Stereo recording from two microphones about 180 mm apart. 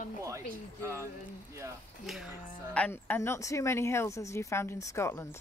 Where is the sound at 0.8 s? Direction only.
15° right (ahead or behind).